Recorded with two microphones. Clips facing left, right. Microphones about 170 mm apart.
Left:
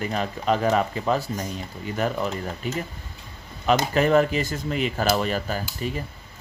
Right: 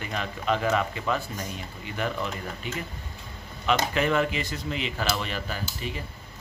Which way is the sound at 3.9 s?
40° left (ahead or behind).